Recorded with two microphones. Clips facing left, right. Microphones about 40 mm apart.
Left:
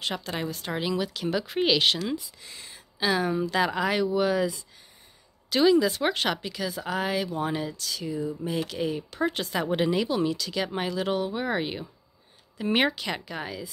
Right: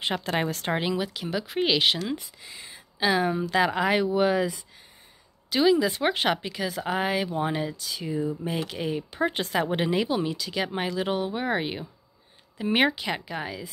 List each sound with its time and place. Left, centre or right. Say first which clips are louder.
0.0 s a woman's voice: right 4 dB; right
5.5 s speech: left 1 dB; centre